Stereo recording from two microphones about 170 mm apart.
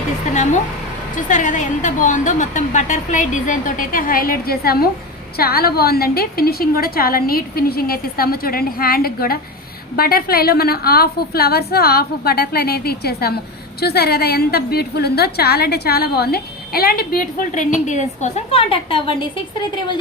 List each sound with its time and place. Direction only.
1.1 s a woman's voice: 50° left (ahead or behind); by 20.0 s 25° left (ahead or behind)